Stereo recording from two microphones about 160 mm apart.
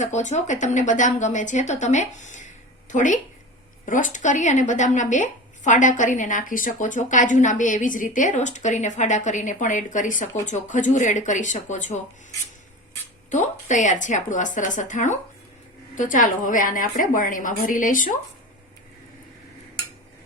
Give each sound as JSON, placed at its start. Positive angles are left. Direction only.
{"t": 0.0, "sound": "a woman's voice", "side_deg": 50}
{"t": 13.3, "sound": "a woman's voice", "side_deg": 50}